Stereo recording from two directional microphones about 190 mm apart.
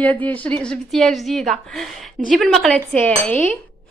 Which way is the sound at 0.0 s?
10° left (ahead or behind).